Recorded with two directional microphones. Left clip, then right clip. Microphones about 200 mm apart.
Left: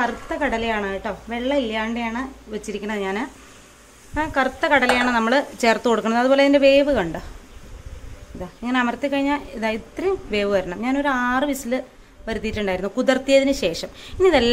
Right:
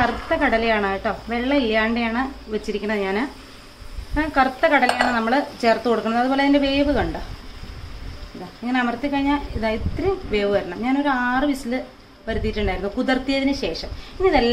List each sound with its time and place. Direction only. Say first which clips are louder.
0.0 s a woman's voice: right 3 dB; 30° left (ahead or behind)
8.6 s speech: left 1 dB; 40° left (ahead or behind)